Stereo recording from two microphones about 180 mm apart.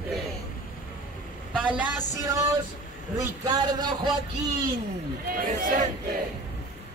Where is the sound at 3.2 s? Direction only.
20° right (ahead or behind).